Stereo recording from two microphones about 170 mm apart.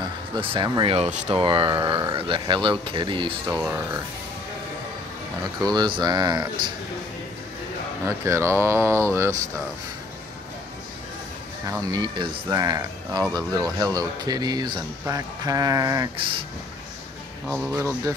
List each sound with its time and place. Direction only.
0.4 s speech: 30° right (ahead or behind)
5.6 s speech: 25° right (ahead or behind)
8.0 s speech: 15° right (ahead or behind)
11.8 s speech: 25° right (ahead or behind)
17.5 s speech: 10° right (ahead or behind)